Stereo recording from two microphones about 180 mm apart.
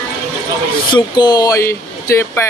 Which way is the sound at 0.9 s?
25° left (ahead or behind).